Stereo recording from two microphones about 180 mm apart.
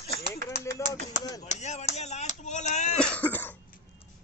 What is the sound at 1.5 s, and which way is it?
Speech, 40° left (ahead or behind).